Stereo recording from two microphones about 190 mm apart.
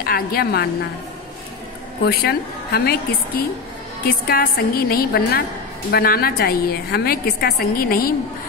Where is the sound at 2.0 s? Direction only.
55° left (ahead or behind).